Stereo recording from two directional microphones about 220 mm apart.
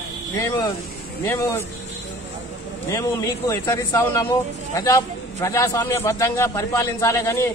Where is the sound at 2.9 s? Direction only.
15° left (ahead or behind).